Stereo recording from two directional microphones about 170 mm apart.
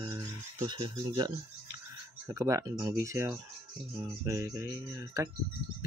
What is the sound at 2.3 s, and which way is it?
Speech, 15° right (ahead or behind).